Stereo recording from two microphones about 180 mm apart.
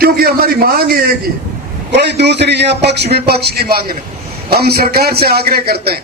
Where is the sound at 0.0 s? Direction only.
55° right (ahead or behind).